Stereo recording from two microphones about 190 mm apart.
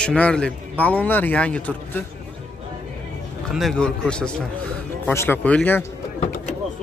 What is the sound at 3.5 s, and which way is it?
A man's voice, centre (ahead or behind).